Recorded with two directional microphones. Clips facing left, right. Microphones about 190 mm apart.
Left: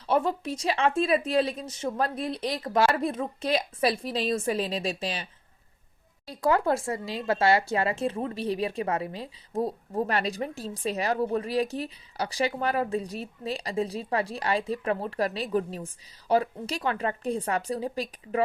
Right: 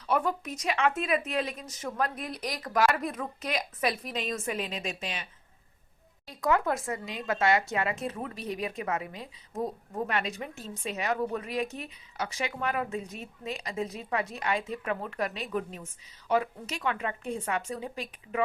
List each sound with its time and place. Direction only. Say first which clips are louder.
0.1 s speech: left 3 dB; 30° left (ahead or behind)